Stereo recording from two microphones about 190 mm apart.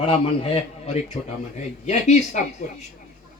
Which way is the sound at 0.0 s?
30° left (ahead or behind).